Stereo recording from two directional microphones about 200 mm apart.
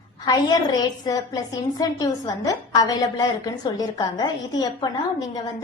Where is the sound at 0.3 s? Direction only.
20° left (ahead or behind).